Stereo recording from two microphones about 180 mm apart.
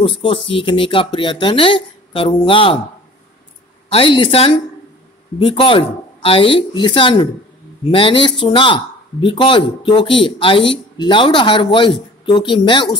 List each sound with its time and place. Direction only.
0.0 s speech: 30° left (ahead or behind)
3.9 s a woman's voice: 30° left (ahead or behind)